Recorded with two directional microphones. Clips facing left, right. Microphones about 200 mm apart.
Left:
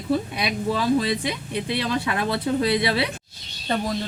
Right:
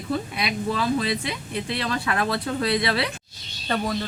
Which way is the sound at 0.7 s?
15° left (ahead or behind).